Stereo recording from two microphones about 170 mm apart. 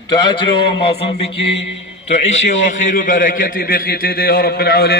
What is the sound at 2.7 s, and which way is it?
A man's voice, 50° left (ahead or behind).